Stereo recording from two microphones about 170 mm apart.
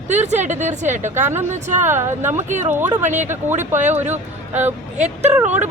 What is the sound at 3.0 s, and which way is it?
Speech, 45° right (ahead or behind).